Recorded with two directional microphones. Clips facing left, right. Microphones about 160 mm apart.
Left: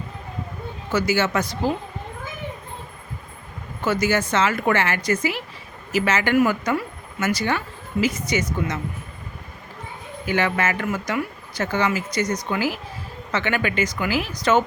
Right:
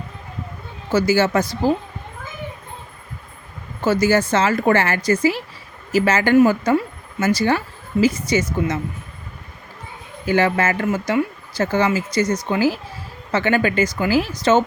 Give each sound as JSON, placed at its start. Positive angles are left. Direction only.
{"t": 0.9, "sound": "speech", "side_deg": -30}
{"t": 4.0, "sound": "speech", "side_deg": -30}
{"t": 10.2, "sound": "speech", "side_deg": -35}